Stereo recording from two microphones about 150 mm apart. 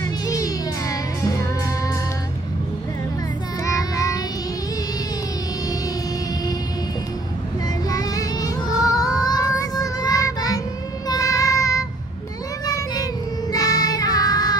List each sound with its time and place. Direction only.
0.0 s music: 25° left (ahead or behind)
3.6 s child singing: 20° left (ahead or behind)
7.6 s child singing: 25° left (ahead or behind)